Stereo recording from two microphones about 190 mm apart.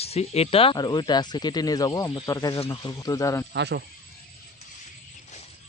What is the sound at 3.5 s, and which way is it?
Speech, 65° right (ahead or behind).